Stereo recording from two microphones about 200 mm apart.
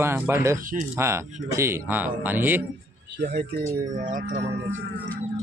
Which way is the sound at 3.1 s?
50° right (ahead or behind).